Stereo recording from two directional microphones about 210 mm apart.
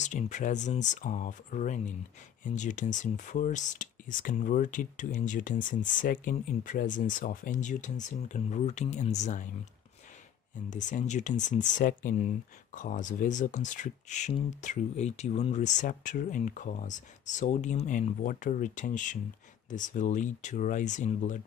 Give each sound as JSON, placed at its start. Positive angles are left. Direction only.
{"t": 0.0, "sound": "speech", "side_deg": 35}
{"t": 10.7, "sound": "speech", "side_deg": 35}